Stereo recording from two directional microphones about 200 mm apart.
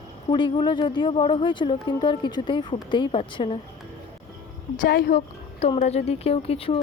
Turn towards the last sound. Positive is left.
turn(degrees=30)  # may be behind; listen again after turning